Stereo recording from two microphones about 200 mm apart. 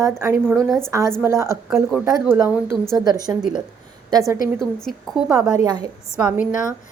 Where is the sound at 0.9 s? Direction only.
15° right (ahead or behind).